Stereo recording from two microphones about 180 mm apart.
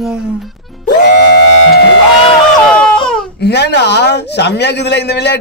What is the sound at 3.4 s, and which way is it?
A man's voice, 70° left (ahead or behind).